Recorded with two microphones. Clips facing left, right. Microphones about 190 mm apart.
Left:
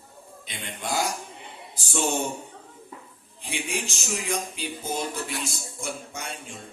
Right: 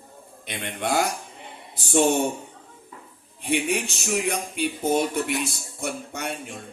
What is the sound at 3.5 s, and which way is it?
A man's voice, 65° right (ahead or behind).